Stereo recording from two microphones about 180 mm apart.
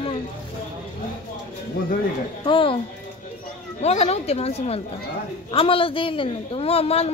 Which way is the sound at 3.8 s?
35° left (ahead or behind).